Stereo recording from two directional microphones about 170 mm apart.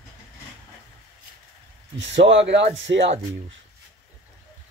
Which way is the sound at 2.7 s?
90° right.